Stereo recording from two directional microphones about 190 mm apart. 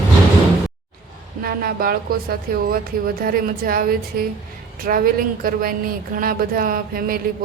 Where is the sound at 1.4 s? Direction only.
50° right (ahead or behind).